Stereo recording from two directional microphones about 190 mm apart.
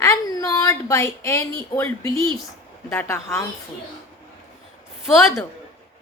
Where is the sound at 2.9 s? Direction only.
10° left (ahead or behind).